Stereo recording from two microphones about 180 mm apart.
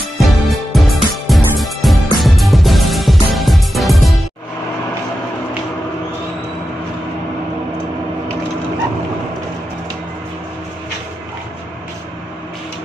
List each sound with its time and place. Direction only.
0.2 s music: centre (ahead or behind)